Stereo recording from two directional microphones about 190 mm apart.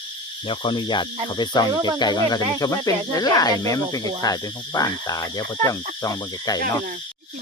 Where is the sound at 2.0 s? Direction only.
20° left (ahead or behind).